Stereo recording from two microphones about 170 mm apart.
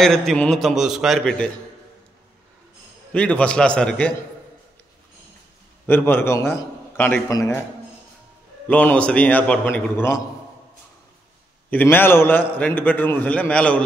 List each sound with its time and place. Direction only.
0.0 s a man's voice: centre (ahead or behind)
3.1 s a man's voice: 5° left (ahead or behind)
5.9 s a man's voice: 10° left (ahead or behind)
8.6 s a man's voice: 10° left (ahead or behind)
11.7 s a man's voice: 10° left (ahead or behind)